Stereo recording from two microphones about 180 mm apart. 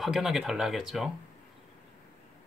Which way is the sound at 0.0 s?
Centre (ahead or behind).